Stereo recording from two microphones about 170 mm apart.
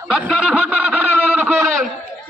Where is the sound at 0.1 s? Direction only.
5° right (ahead or behind).